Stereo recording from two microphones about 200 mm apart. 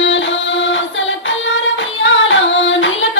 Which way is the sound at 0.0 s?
65° left (ahead or behind).